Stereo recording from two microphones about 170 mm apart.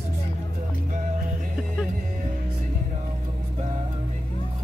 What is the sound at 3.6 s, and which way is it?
Music, 40° right (ahead or behind).